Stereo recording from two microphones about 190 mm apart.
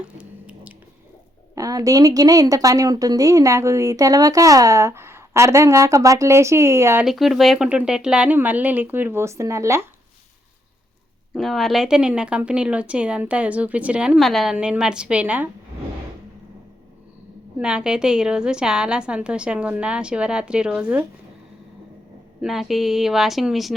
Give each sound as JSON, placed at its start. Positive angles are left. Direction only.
{"t": 0.2, "sound": "squish", "side_deg": -5}
{"t": 1.5, "sound": "a woman's voice", "side_deg": -20}
{"t": 7.0, "sound": "a woman's voice", "side_deg": 0}
{"t": 11.3, "sound": "a woman's voice", "side_deg": 0}
{"t": 17.6, "sound": "a woman's voice", "side_deg": -5}
{"t": 22.4, "sound": "a woman's voice", "side_deg": 0}